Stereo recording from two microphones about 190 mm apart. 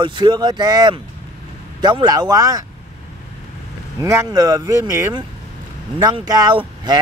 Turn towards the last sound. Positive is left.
turn(degrees=-20)  # may be behind; listen again after turning